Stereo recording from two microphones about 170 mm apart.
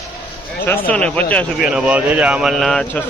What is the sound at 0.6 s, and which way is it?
Speech, 10° left (ahead or behind).